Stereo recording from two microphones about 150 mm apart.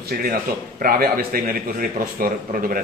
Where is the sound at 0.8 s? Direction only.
75° right (ahead or behind).